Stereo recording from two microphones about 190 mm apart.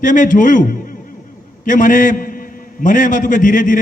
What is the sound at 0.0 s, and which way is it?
Speech, 45° left (ahead or behind).